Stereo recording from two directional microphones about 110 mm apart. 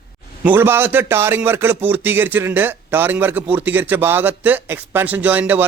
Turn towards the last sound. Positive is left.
turn(degrees=-15)  # may be behind; listen again after turning